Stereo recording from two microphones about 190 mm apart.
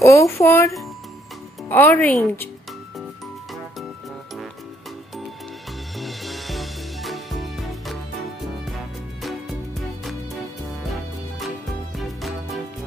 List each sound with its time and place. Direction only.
0.0 s speech: 15° left (ahead or behind)
1.7 s speech: 10° left (ahead or behind)
5.9 s music: centre (ahead or behind)
9.2 s music: centre (ahead or behind)